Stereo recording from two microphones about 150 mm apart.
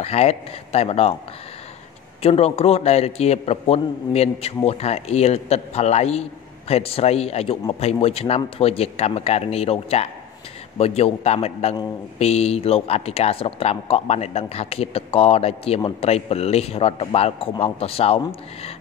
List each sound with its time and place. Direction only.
0.0 s a man's voice: 45° left (ahead or behind)
2.2 s a man's voice: 40° left (ahead or behind)